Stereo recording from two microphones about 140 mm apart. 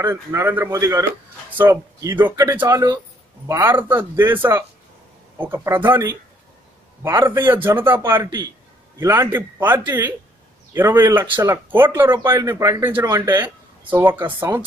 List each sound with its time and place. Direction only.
0.0 s a man's voice: 20° right (ahead or behind)